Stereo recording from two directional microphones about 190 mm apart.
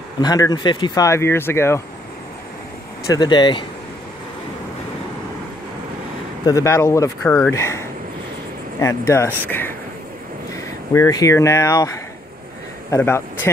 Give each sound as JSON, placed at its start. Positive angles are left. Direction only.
{"t": 0.2, "sound": "speech", "side_deg": 20}
{"t": 3.1, "sound": "speech", "side_deg": 20}
{"t": 6.4, "sound": "speech", "side_deg": 15}
{"t": 9.5, "sound": "a sound", "side_deg": 10}
{"t": 10.5, "sound": "speech", "side_deg": 15}